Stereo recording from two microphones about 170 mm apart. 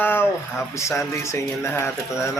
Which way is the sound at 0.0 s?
10° left (ahead or behind).